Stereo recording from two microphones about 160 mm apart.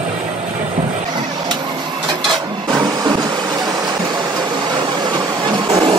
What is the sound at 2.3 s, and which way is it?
Vehicle, 25° right (ahead or behind).